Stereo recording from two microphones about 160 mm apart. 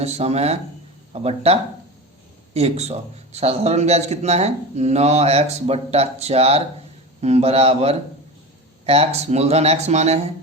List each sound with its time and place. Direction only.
0.0 s a man's voice: 40° right (ahead or behind)